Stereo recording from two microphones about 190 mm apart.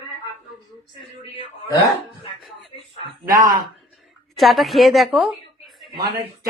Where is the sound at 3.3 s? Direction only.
45° right (ahead or behind).